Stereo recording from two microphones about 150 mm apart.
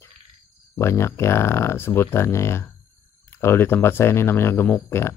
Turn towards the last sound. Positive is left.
turn(degrees=15)  # may be behind; listen again after turning